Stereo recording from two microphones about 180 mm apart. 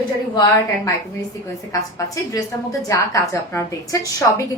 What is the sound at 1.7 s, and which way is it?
A woman's voice, 20° left (ahead or behind).